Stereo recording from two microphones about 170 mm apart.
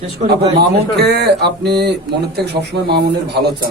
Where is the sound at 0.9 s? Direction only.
70° right (ahead or behind).